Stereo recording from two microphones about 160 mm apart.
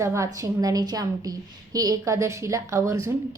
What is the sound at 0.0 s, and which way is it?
A woman's voice, 20° right (ahead or behind).